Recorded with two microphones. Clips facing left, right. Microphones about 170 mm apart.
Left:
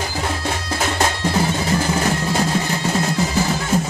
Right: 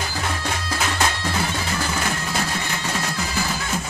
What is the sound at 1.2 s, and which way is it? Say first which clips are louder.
Music: left 6 dB; 20° left (ahead or behind).